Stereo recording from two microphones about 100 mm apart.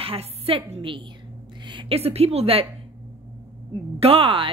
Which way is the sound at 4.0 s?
70° right (ahead or behind).